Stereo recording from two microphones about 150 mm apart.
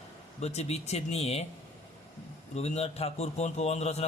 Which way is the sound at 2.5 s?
45° left (ahead or behind).